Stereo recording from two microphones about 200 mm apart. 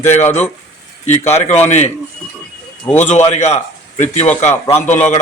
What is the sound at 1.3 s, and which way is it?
Speech, 35° left (ahead or behind).